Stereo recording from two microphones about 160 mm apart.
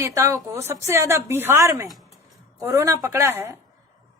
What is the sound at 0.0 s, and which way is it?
A woman's voice, 20° right (ahead or behind).